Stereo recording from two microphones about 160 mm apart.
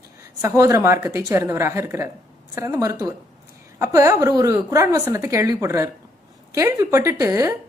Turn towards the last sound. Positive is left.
turn(degrees=-20)  # may be behind; listen again after turning